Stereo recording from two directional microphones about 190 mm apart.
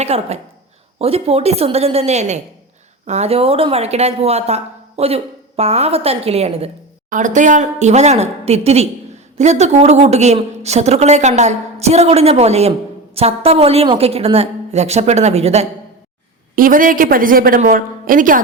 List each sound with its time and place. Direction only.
0.0 s a woman's voice: 35° right (ahead or behind)
16.6 s a woman's voice: 45° right (ahead or behind)